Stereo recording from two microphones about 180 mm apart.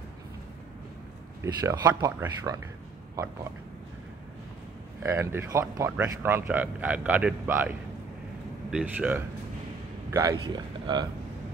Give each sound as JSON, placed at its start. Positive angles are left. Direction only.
{"t": 1.4, "sound": "speech", "side_deg": -20}
{"t": 5.0, "sound": "a man's voice", "side_deg": -15}
{"t": 10.1, "sound": "speech", "side_deg": -20}